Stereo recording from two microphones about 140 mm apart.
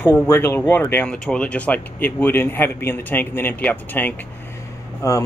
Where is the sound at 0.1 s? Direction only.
15° left (ahead or behind).